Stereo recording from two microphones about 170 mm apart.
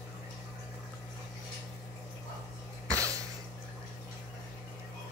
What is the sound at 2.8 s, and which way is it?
Cough, 20° right (ahead or behind).